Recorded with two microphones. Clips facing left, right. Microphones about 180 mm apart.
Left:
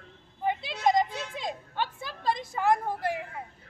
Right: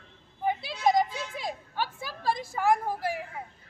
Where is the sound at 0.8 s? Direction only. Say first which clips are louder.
Even; 5° right (ahead or behind).